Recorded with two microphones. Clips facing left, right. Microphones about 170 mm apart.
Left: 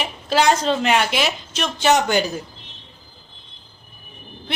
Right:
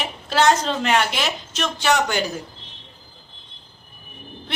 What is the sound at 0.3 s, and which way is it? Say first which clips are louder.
Speech: left 1 dB; 10° left (ahead or behind).